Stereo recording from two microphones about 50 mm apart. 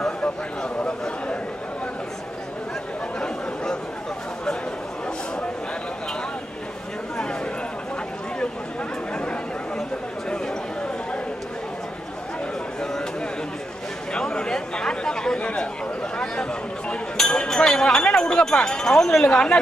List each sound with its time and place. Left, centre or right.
0.2 s a man's voice: left
9.1 s chatter: left
14.1 s chatter: centre
15.3 s a sound: left
16.9 s chink: centre
19.2 s speech: centre